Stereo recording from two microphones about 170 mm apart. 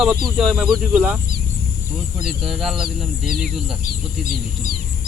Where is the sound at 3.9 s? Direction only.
60° right (ahead or behind).